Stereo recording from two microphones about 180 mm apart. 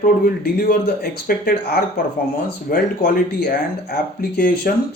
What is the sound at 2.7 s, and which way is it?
Speech, 55° left (ahead or behind).